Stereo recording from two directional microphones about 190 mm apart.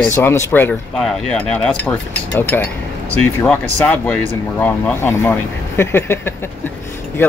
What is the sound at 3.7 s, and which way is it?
Speech, 10° left (ahead or behind).